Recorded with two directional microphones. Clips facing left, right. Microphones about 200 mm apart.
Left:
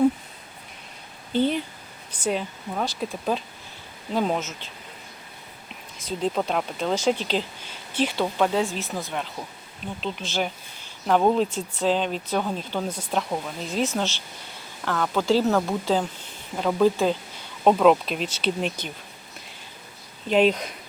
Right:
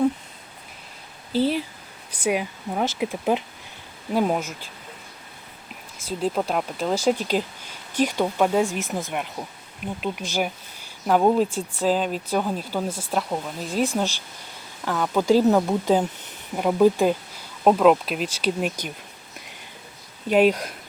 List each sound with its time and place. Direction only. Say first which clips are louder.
1.3 s speech: right 1 dB; 5° right (ahead or behind)
6.1 s speech: right 1 dB; 5° right (ahead or behind)
20.2 s speech: right 2 dB; 10° right (ahead or behind)